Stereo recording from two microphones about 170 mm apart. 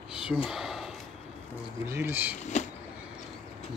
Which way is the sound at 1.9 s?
15° right (ahead or behind).